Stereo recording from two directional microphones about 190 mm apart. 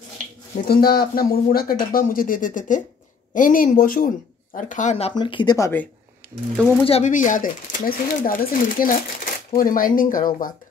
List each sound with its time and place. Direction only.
0.7 s speech: 55° left (ahead or behind); by 5.7 s 25° left (ahead or behind)
6.8 s speech: 35° left (ahead or behind)